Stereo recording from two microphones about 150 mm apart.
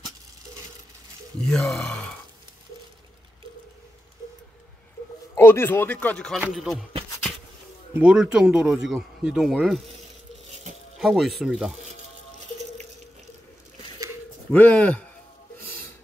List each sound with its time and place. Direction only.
1.4 s speech: 5° left (ahead or behind)
5.3 s speech: 15° left (ahead or behind); by 6.9 s centre (ahead or behind)
7.9 s speech: 5° right (ahead or behind)
11.0 s speech: centre (ahead or behind)
14.5 s speech: 10° left (ahead or behind)